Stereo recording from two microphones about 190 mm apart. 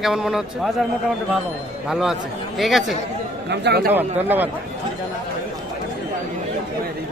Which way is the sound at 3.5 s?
60° right (ahead or behind).